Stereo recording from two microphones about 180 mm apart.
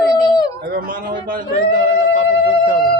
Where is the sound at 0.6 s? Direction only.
50° right (ahead or behind).